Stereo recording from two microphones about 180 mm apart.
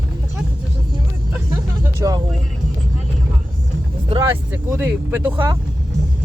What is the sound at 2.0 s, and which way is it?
Music, 20° right (ahead or behind).